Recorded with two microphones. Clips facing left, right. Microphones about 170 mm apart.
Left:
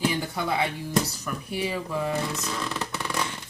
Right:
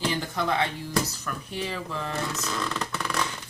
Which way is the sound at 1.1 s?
10° left (ahead or behind).